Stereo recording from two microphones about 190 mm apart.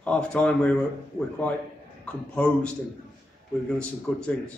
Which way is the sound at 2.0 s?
5° left (ahead or behind).